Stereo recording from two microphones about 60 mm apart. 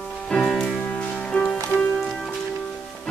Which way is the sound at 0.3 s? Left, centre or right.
Centre.